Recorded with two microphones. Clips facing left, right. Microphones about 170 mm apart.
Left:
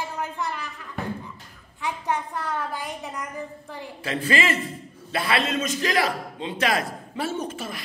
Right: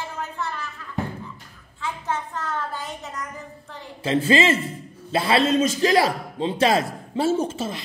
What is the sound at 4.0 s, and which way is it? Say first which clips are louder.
A man's voice: right 6 dB; 25° right (ahead or behind).